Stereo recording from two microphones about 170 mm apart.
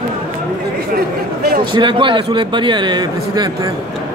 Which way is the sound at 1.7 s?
30° right (ahead or behind).